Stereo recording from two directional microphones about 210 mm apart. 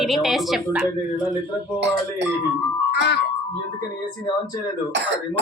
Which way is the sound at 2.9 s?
50° left (ahead or behind).